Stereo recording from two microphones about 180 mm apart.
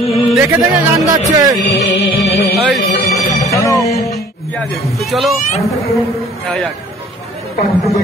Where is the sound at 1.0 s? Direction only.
20° right (ahead or behind).